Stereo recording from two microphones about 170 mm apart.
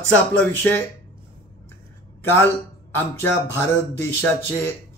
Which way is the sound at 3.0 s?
15° left (ahead or behind).